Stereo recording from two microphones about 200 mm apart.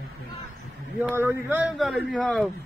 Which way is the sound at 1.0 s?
10° right (ahead or behind).